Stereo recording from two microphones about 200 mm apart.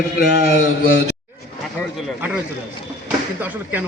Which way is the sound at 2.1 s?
10° right (ahead or behind).